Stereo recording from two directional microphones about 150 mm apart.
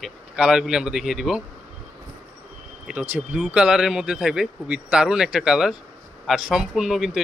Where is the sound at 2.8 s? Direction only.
10° right (ahead or behind).